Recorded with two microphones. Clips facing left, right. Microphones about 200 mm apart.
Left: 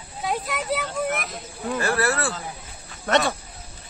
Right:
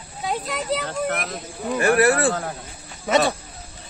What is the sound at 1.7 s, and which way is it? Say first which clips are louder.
Speech: right 7 dB; 15° right (ahead or behind).